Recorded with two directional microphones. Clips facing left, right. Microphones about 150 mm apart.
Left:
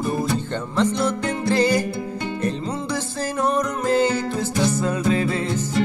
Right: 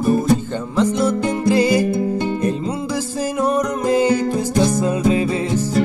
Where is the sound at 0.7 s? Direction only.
10° right (ahead or behind).